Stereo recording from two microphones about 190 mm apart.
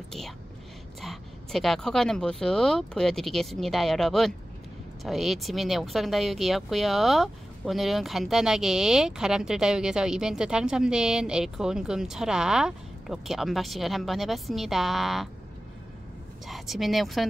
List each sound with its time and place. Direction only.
1.0 s speech: centre (ahead or behind)
16.4 s speech: centre (ahead or behind)